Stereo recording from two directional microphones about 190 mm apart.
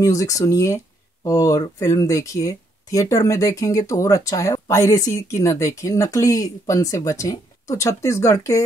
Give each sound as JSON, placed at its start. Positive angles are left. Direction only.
{"t": 0.0, "sound": "speech", "side_deg": 15}